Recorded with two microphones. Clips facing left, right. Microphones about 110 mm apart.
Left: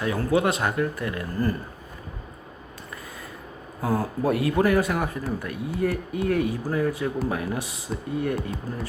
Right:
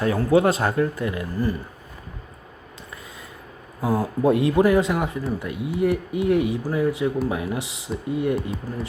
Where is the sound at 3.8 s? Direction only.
15° right (ahead or behind).